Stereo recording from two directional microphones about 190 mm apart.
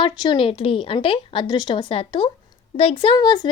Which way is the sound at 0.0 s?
25° left (ahead or behind).